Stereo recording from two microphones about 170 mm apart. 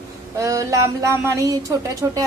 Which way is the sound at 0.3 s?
20° right (ahead or behind).